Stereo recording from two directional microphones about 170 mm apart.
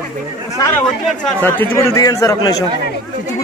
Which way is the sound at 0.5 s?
20° left (ahead or behind).